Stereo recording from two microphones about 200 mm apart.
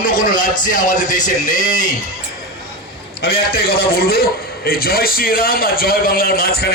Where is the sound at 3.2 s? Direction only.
50° left (ahead or behind).